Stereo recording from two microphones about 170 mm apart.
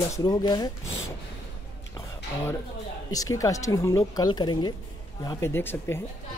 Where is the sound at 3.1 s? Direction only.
20° left (ahead or behind).